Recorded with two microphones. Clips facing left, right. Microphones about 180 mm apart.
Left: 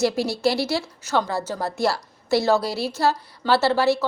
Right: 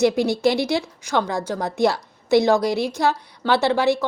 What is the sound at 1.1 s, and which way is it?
Speech, 5° left (ahead or behind).